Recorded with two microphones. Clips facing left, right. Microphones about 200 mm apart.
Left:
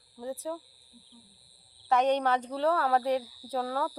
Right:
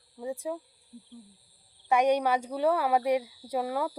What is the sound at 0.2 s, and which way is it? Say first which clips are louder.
Speech: right 2 dB; 10° right (ahead or behind).